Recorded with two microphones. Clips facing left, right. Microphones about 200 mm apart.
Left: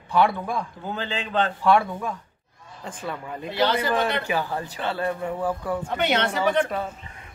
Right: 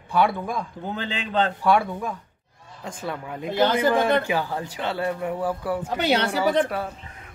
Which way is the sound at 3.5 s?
50° right (ahead or behind).